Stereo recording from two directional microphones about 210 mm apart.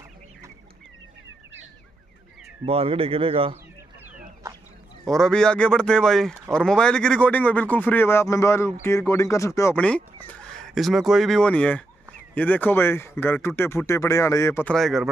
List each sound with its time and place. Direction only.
2.6 s speech: 25° right (ahead or behind)
5.0 s speech: centre (ahead or behind)
10.2 s fowl: 5° left (ahead or behind)
12.4 s speech: 5° left (ahead or behind)